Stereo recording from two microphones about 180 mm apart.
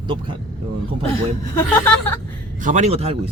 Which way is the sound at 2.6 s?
40° right (ahead or behind).